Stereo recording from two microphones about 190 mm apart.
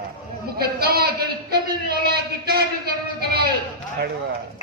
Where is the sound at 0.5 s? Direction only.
55° right (ahead or behind).